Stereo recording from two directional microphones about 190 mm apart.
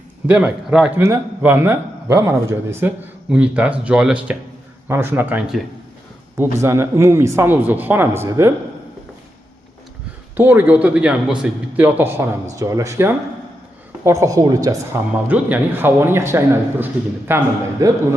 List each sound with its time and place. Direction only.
0.3 s a man's voice: 5° right (ahead or behind)
10.3 s a man's voice: 10° right (ahead or behind)